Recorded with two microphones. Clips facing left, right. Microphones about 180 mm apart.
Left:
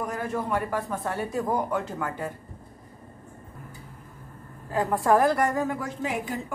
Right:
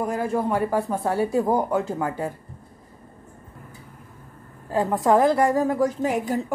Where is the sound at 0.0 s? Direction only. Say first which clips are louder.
Right 6 dB; 30° right (ahead or behind).